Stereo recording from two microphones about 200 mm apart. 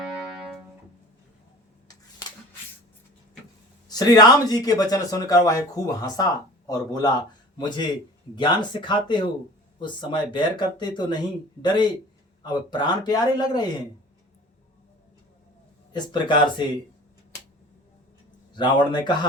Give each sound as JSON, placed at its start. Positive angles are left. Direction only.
{"t": 0.0, "sound": "music", "side_deg": 0}
{"t": 3.8, "sound": "speech", "side_deg": 20}
{"t": 15.9, "sound": "speech", "side_deg": 20}
{"t": 18.5, "sound": "speech", "side_deg": 20}